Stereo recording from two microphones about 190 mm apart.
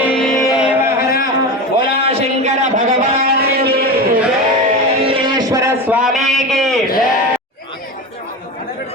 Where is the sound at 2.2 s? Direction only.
35° right (ahead or behind).